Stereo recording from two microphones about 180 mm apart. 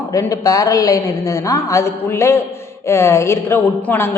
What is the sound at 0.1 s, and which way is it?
A woman's voice, 20° left (ahead or behind).